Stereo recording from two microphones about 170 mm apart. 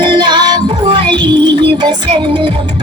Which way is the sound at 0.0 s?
25° right (ahead or behind).